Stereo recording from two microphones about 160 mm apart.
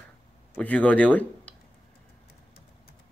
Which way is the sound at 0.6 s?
10° left (ahead or behind).